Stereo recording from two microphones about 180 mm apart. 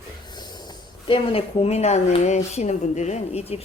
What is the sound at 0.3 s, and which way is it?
Speech, 25° left (ahead or behind).